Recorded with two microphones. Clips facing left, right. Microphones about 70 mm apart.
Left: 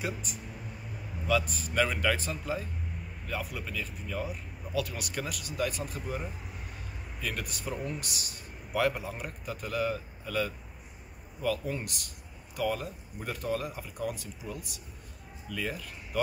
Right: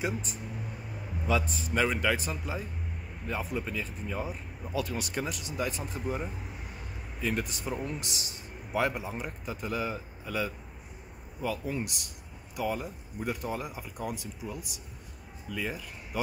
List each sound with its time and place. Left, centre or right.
0.0 s a man's voice: right
11.6 s speech: centre